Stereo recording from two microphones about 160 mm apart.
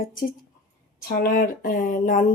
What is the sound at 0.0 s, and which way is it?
Speech, 60° left (ahead or behind).